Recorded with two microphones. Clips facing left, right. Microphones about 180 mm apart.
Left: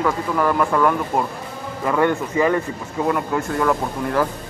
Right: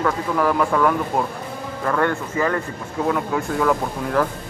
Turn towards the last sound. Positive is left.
turn(degrees=0)  # may be behind; listen again after turning